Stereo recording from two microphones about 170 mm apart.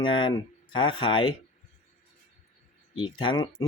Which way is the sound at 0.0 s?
30° left (ahead or behind).